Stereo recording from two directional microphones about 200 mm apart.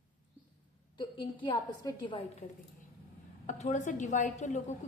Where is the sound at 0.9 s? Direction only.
25° left (ahead or behind).